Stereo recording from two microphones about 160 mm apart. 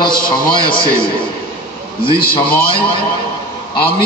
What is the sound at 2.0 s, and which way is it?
Speech, 30° left (ahead or behind).